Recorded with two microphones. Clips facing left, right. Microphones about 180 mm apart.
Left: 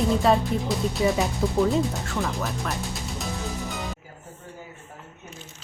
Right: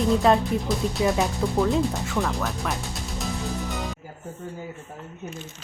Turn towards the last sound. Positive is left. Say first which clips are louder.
# right 2 dB
turn(degrees=0)  # may be behind; listen again after turning